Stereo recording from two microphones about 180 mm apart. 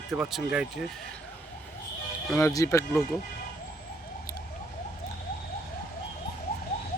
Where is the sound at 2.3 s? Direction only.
15° left (ahead or behind).